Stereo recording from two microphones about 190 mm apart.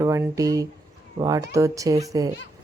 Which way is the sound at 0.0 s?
15° right (ahead or behind).